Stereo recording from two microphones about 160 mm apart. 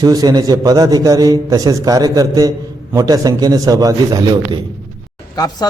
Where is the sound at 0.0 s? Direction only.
25° right (ahead or behind).